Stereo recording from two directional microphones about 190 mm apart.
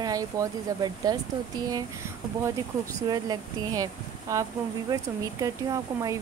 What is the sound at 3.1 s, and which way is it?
Speech, 20° right (ahead or behind).